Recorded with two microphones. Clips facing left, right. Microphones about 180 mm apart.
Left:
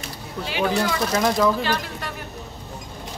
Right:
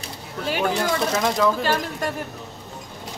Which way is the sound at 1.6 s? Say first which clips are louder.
Right 2 dB; 45° right (ahead or behind).